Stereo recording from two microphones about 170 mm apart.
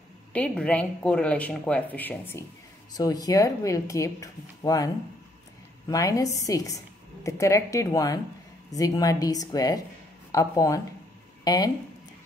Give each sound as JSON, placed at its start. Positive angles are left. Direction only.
{"t": 0.3, "sound": "speech", "side_deg": 5}